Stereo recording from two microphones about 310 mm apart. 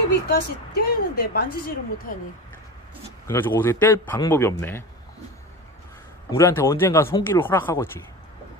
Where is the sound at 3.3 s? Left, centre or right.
Centre.